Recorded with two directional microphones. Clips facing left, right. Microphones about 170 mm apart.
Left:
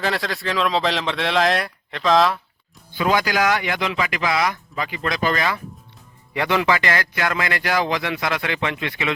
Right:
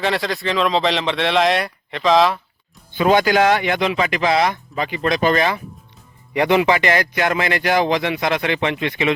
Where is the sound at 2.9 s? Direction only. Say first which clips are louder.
Right 5 dB; 25° right (ahead or behind).